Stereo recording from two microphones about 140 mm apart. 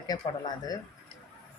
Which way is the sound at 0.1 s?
25° left (ahead or behind).